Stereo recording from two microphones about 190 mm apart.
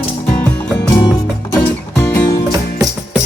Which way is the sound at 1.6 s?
10° left (ahead or behind).